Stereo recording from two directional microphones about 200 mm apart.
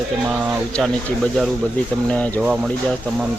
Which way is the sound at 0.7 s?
5° left (ahead or behind).